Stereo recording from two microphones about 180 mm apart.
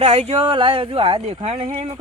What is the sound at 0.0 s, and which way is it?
Speech, 35° right (ahead or behind).